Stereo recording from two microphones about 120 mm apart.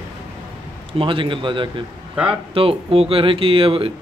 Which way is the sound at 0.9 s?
45° right (ahead or behind).